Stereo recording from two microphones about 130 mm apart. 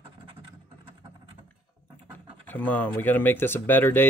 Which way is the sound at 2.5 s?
10° left (ahead or behind).